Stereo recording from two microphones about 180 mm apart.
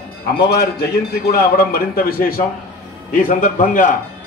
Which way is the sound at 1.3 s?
55° left (ahead or behind).